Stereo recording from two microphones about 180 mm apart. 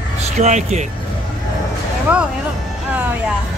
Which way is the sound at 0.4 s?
40° right (ahead or behind).